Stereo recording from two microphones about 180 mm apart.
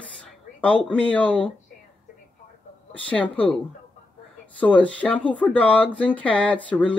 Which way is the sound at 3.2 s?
30° left (ahead or behind).